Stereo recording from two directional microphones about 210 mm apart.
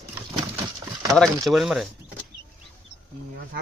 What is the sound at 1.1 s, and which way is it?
Speech, centre (ahead or behind).